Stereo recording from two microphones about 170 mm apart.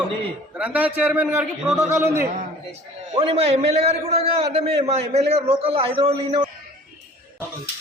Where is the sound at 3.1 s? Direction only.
35° right (ahead or behind).